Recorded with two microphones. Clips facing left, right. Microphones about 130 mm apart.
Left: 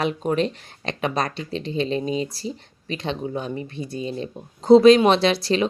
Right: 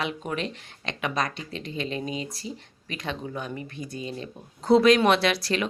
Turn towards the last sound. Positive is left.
turn(degrees=25)  # may be behind; listen again after turning